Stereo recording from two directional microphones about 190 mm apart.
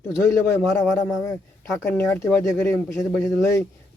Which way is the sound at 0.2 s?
15° left (ahead or behind).